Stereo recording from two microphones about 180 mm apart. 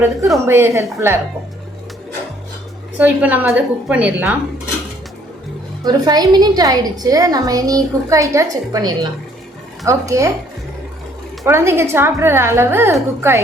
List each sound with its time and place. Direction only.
0.4 s a woman's voice: 15° right (ahead or behind)
3.0 s a woman's voice: 10° right (ahead or behind)
5.8 s a woman's voice: 20° right (ahead or behind)
11.4 s a woman's voice: 15° right (ahead or behind)